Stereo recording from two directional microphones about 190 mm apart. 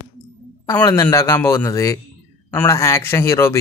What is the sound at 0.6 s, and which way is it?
Speech, 15° left (ahead or behind).